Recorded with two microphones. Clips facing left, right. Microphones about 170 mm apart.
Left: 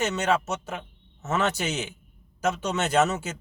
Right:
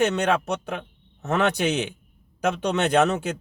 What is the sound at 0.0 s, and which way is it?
Speech, 60° right (ahead or behind).